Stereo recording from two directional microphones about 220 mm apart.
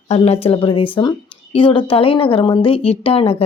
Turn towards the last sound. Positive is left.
turn(degrees=25)  # may be behind; listen again after turning